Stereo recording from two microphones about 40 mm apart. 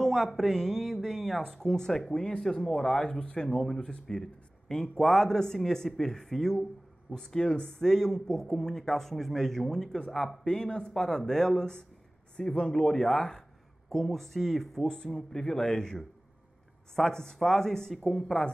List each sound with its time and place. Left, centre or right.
0.0 s speech: centre; by 3.4 s left
3.4 s speech: centre
7.8 s speech: centre
15.1 s speech: centre